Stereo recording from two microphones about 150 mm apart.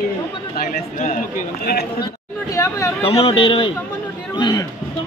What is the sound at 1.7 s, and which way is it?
Speech, 90° left.